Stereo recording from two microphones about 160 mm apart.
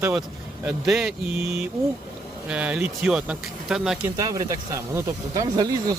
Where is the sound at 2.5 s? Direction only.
5° right (ahead or behind).